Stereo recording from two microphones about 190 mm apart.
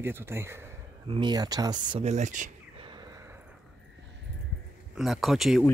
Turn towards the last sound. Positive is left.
turn(degrees=0)  # may be behind; listen again after turning